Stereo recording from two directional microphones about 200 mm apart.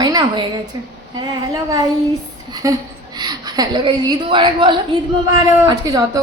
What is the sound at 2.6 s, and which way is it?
A woman's voice, 15° right (ahead or behind).